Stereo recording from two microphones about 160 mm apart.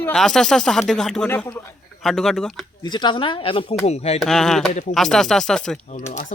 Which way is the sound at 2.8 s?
30° left (ahead or behind).